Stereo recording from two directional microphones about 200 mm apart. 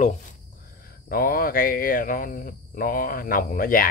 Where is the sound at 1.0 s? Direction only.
45° left (ahead or behind).